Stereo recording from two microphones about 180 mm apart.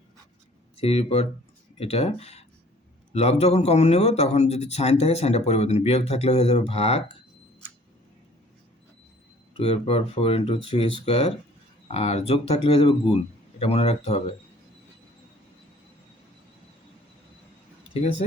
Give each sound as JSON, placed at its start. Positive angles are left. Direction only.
{"t": 0.8, "sound": "speech", "side_deg": 35}
{"t": 9.6, "sound": "speech", "side_deg": 35}